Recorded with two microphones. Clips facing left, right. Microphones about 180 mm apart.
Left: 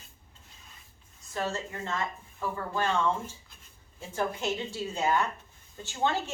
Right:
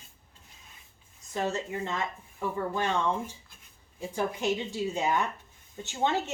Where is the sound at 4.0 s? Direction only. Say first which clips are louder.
Right 1 dB; 15° right (ahead or behind).